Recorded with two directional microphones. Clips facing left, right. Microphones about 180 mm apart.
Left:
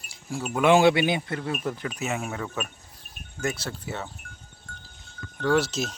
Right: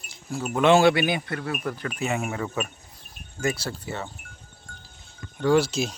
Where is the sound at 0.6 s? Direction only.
15° left (ahead or behind).